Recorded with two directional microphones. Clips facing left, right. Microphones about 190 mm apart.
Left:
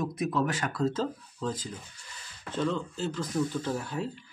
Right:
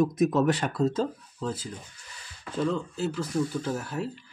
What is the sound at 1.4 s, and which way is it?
Speech, 10° right (ahead or behind).